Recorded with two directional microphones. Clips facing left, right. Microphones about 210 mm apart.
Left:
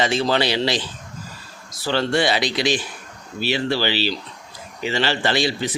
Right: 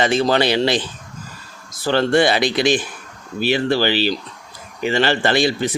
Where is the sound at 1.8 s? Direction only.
50° right (ahead or behind).